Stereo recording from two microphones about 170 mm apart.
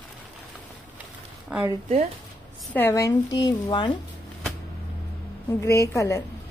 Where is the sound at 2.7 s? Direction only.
15° left (ahead or behind).